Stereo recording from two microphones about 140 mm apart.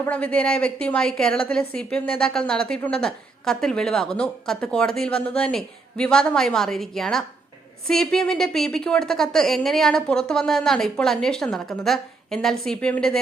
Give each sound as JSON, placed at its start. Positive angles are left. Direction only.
{"t": 0.0, "sound": "a woman's voice", "side_deg": 10}